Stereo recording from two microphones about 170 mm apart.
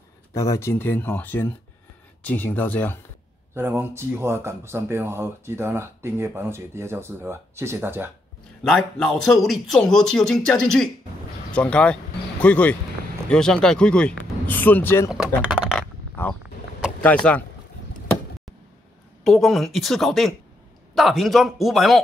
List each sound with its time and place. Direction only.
0.3 s speech: 15° left (ahead or behind)
3.5 s speech: 15° right (ahead or behind)
8.6 s speech: 5° left (ahead or behind)
15.0 s a sound: centre (ahead or behind)
17.0 s speech: 5° left (ahead or behind)
19.2 s speech: centre (ahead or behind)